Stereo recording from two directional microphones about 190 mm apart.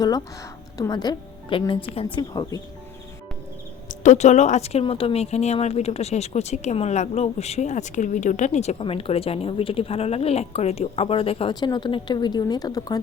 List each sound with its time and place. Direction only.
0.8 s speech: 20° left (ahead or behind)
3.8 s speech: 40° left (ahead or behind); by 13.0 s 20° left (ahead or behind)